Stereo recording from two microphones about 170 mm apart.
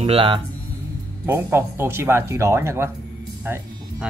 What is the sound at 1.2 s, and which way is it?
Speech, 15° right (ahead or behind).